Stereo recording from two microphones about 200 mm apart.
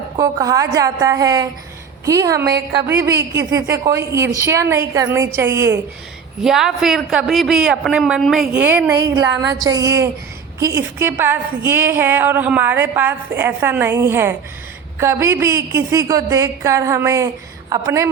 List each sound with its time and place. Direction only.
0.2 s a woman's voice: 15° right (ahead or behind)
2.4 s a woman's voice: 55° right (ahead or behind)
3.0 s a woman's voice: 15° right (ahead or behind)
6.4 s a woman's voice: centre (ahead or behind)
9.0 s a woman's voice: 20° right (ahead or behind)